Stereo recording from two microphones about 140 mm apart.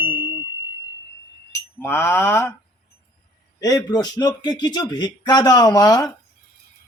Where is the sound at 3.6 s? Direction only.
25° left (ahead or behind).